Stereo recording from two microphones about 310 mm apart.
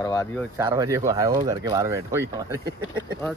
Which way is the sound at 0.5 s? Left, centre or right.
Centre.